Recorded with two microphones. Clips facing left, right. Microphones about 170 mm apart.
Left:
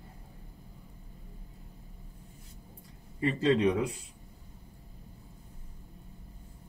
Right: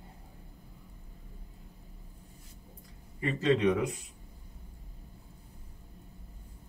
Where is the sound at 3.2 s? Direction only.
30° left (ahead or behind).